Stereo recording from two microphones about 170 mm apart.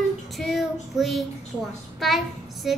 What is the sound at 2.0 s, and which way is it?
Child singing, centre (ahead or behind).